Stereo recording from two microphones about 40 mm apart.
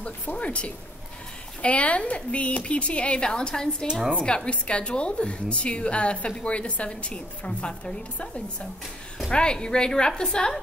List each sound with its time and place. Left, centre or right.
0.0 s a woman's voice: left; by 10.6 s centre